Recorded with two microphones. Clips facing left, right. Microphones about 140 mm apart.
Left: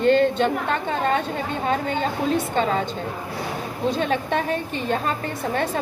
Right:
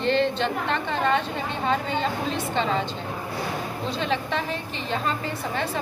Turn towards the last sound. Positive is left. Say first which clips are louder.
# left 4 dB
turn(degrees=50)  # may be behind; listen again after turning